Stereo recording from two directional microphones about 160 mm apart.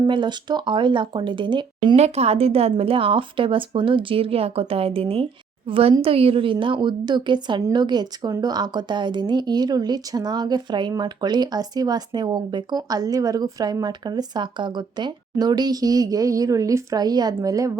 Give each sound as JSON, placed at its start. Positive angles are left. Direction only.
{"t": 0.0, "sound": "a woman's voice", "side_deg": -30}
{"t": 2.0, "sound": "a woman's voice", "side_deg": -40}